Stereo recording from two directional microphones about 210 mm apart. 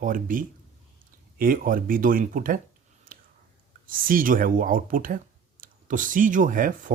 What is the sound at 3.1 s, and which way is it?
Whispering, 40° right (ahead or behind).